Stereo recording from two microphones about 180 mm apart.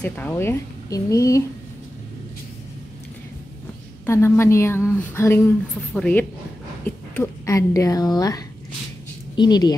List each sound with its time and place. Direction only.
0.0 s speech: 10° left (ahead or behind)
4.0 s speech: 15° left (ahead or behind)
9.4 s speech: 20° left (ahead or behind)